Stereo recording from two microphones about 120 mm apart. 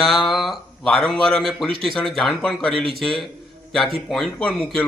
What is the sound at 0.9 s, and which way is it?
Speech, 5° left (ahead or behind).